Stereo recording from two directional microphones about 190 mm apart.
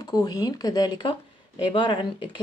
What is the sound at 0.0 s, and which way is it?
Speech, 20° left (ahead or behind).